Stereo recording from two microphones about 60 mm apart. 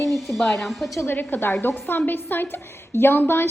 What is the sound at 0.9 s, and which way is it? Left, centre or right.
A woman's voice, left.